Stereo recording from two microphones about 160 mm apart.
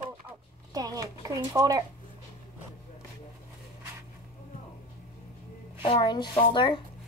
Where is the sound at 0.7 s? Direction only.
25° right (ahead or behind).